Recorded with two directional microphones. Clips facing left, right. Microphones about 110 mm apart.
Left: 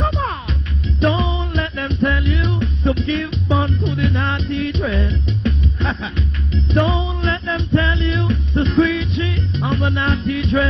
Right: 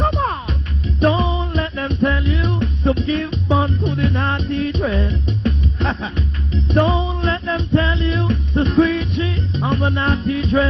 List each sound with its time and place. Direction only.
0.2 s music: 35° right (ahead or behind)
2.6 s music: 40° right (ahead or behind)
3.8 s music: 45° right (ahead or behind)
8.3 s music: 45° right (ahead or behind)